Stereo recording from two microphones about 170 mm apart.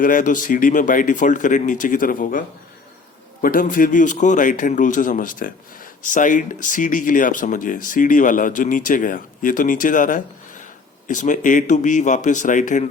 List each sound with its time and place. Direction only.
0.0 s a man's voice: 50° left (ahead or behind)
3.4 s a man's voice: 55° left (ahead or behind)